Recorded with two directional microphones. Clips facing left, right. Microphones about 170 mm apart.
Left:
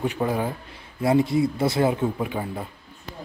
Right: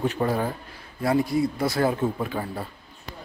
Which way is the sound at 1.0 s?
25° left (ahead or behind).